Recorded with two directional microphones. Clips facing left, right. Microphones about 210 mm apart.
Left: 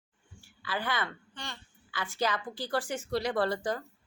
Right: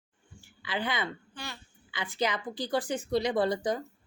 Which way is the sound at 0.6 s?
20° right (ahead or behind).